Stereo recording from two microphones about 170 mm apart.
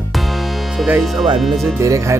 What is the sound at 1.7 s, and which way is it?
Speech, 20° right (ahead or behind).